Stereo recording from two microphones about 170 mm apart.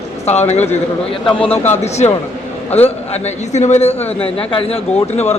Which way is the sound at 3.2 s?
40° left (ahead or behind).